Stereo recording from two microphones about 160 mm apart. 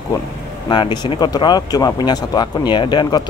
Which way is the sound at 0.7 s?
25° left (ahead or behind).